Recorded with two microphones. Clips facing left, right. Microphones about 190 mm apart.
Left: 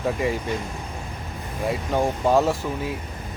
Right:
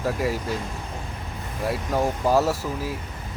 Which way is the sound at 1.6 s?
5° right (ahead or behind).